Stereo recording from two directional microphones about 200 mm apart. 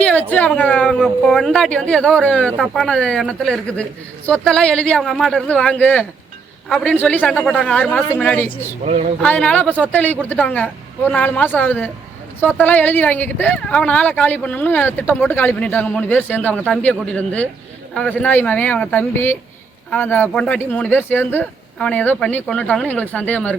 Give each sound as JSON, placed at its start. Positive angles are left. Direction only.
{"t": 0.0, "sound": "speech", "side_deg": 5}
{"t": 8.8, "sound": "speech", "side_deg": -30}
{"t": 9.2, "sound": "speech", "side_deg": 5}